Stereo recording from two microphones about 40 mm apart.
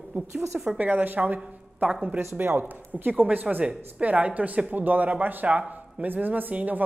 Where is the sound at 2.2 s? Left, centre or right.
Right.